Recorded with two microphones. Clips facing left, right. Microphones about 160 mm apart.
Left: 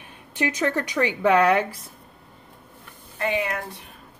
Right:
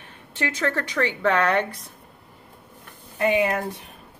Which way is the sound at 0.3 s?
15° left (ahead or behind).